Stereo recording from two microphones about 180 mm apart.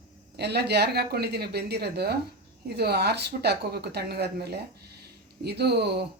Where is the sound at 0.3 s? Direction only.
65° right (ahead or behind).